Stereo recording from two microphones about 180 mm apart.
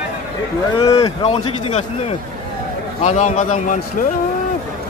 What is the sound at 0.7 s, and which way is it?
Speech, 20° left (ahead or behind).